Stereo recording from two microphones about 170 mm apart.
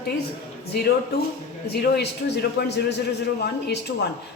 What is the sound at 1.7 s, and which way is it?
A man's voice, 75° left (ahead or behind).